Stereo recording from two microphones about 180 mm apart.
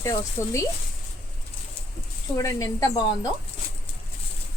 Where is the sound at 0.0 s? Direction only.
15° left (ahead or behind).